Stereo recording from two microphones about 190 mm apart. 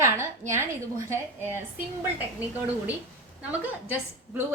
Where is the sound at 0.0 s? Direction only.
15° right (ahead or behind).